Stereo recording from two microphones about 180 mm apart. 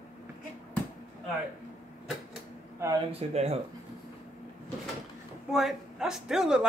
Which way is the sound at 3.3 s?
35° right (ahead or behind).